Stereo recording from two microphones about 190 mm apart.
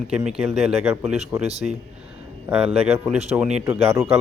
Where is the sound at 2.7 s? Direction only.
30° right (ahead or behind).